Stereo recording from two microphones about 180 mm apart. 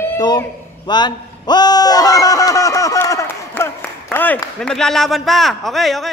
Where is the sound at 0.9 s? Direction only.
25° left (ahead or behind).